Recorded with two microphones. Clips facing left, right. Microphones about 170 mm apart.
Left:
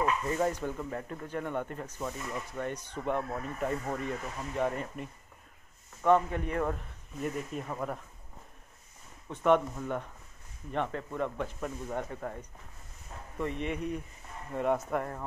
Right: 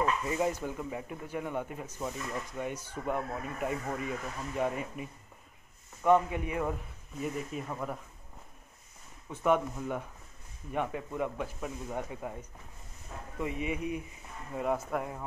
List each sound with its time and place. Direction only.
0.3 s a man's voice: 10° right (ahead or behind)
9.3 s a man's voice: 5° right (ahead or behind)